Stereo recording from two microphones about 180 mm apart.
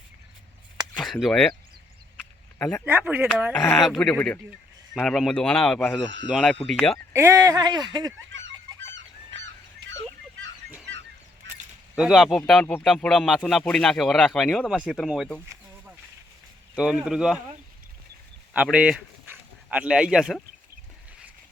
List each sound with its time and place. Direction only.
0.9 s speech: centre (ahead or behind)
2.6 s speech: 10° left (ahead or behind)
2.8 s speech: 10° right (ahead or behind)
3.8 s speech: centre (ahead or behind)
7.1 s speech: 15° right (ahead or behind)
8.3 s fowl: 90° right
11.9 s speech: centre (ahead or behind)
16.7 s speech: 5° right (ahead or behind)
18.5 s speech: 5° right (ahead or behind)